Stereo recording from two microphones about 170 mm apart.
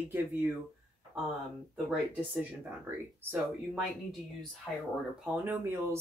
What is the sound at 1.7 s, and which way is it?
Speech, centre (ahead or behind).